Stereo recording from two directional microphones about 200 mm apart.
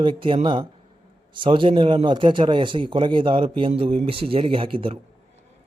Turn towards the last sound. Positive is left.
turn(degrees=-25)  # may be behind; listen again after turning